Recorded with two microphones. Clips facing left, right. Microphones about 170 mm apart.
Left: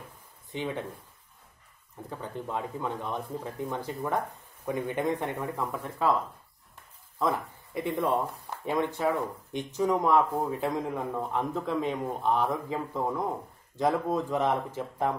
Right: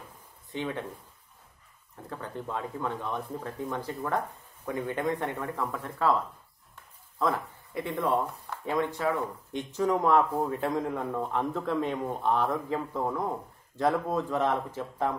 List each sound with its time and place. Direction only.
2.0 s speech: 15° left (ahead or behind)
7.2 s speech: 15° left (ahead or behind)